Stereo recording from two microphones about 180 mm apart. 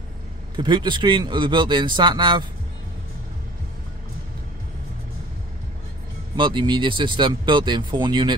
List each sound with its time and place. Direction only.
0.6 s speech: 25° right (ahead or behind)
6.3 s speech: 25° right (ahead or behind)